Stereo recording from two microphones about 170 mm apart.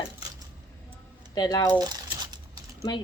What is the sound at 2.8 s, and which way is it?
Speech, 25° left (ahead or behind).